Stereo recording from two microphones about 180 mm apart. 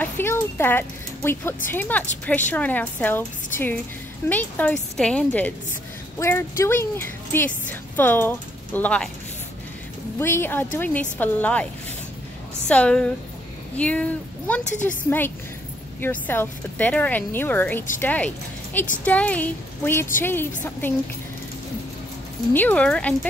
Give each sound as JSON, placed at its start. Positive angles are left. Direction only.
{"t": 0.0, "sound": "a woman's voice", "side_deg": 10}
{"t": 10.1, "sound": "speech", "side_deg": 10}
{"t": 12.6, "sound": "speech", "side_deg": 5}
{"t": 14.6, "sound": "a woman's voice", "side_deg": 40}
{"t": 14.9, "sound": "speech", "side_deg": 10}
{"t": 22.5, "sound": "speech", "side_deg": 10}